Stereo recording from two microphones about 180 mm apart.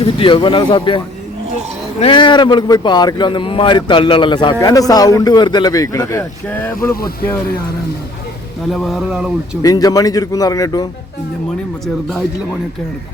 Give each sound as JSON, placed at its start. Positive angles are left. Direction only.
{"t": 0.2, "sound": "speech", "side_deg": 25}
{"t": 6.9, "sound": "speech", "side_deg": 55}
{"t": 8.7, "sound": "speech", "side_deg": 0}
{"t": 9.6, "sound": "speech", "side_deg": 20}